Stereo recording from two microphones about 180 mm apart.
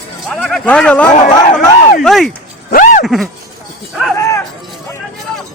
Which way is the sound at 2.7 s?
50° left (ahead or behind).